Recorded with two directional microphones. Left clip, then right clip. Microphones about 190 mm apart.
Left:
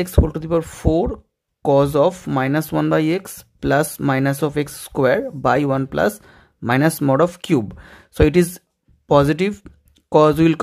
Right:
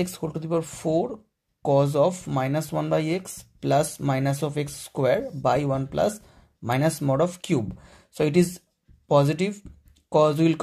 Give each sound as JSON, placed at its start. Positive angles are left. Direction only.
{"t": 0.0, "sound": "speech", "side_deg": 30}